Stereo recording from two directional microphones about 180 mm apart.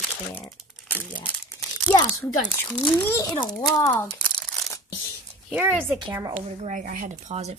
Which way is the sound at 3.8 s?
20° left (ahead or behind).